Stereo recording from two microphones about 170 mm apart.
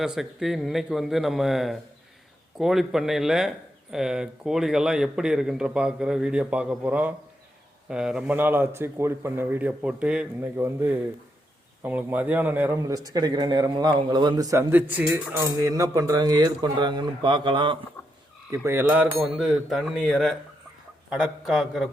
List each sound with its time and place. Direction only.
0.0 s a man's voice: centre (ahead or behind); by 17.7 s 30° right (ahead or behind)
18.5 s a man's voice: 15° right (ahead or behind)